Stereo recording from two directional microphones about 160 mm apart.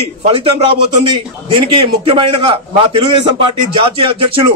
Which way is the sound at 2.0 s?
30° right (ahead or behind).